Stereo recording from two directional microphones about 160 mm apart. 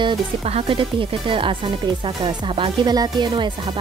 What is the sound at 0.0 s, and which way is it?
Speech, 35° right (ahead or behind).